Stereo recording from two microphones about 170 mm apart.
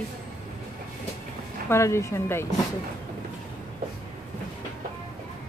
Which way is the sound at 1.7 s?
15° left (ahead or behind).